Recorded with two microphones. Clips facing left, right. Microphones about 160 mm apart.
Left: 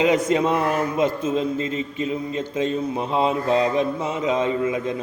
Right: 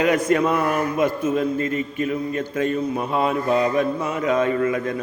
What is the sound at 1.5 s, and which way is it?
Mantra, 55° right (ahead or behind).